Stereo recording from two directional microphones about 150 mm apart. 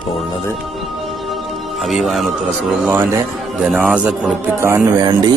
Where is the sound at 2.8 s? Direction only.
15° right (ahead or behind).